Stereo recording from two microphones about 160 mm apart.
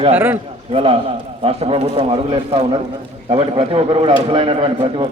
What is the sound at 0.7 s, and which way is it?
A man's voice, 35° right (ahead or behind).